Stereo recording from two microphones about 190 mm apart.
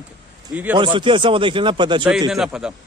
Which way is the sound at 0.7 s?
25° right (ahead or behind).